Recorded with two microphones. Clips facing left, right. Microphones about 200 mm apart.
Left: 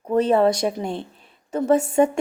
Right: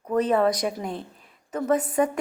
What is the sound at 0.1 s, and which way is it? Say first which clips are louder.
Speech: left 4 dB; 30° left (ahead or behind).